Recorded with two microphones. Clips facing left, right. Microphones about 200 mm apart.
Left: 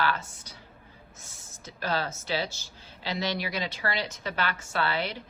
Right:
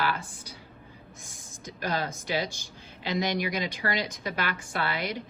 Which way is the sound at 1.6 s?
15° right (ahead or behind).